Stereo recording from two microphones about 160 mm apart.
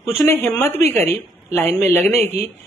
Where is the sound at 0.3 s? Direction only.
15° left (ahead or behind).